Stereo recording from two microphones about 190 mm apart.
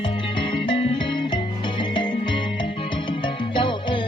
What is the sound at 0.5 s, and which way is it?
Music, 30° left (ahead or behind).